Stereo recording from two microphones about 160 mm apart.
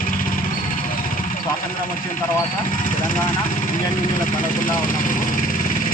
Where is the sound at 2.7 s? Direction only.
55° left (ahead or behind).